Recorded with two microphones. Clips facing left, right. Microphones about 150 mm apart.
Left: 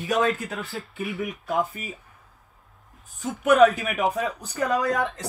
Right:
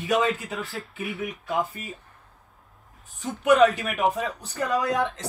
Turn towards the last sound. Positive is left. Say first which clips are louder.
# even
turn(degrees=0)  # may be behind; listen again after turning